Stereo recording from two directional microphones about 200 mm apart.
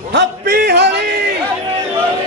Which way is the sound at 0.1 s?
50° right (ahead or behind).